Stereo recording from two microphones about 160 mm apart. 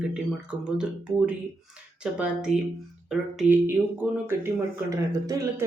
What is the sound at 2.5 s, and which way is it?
Speech, 45° right (ahead or behind).